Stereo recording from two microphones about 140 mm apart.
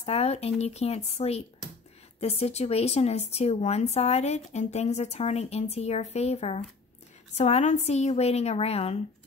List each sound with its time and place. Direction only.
0.0 s speech: 45° left (ahead or behind)